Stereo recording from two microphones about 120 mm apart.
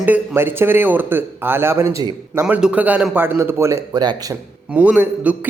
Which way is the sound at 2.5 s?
10° right (ahead or behind).